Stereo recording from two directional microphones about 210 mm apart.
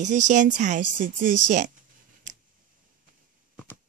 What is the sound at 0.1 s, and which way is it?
A woman's voice, 35° right (ahead or behind).